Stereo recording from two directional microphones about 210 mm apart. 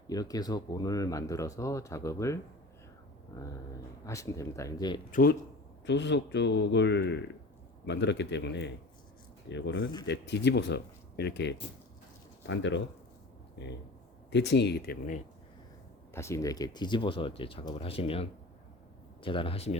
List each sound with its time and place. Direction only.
0.1 s speech: 15° left (ahead or behind)
4.0 s speech: 15° left (ahead or behind)
5.1 s speech: 45° left (ahead or behind)
5.8 s speech: 60° left (ahead or behind); by 15.2 s 40° left (ahead or behind)
16.1 s speech: 15° left (ahead or behind)